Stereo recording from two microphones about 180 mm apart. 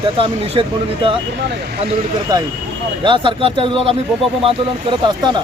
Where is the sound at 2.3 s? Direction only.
20° right (ahead or behind).